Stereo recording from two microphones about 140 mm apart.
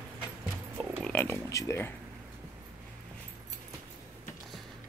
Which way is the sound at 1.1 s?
20° left (ahead or behind).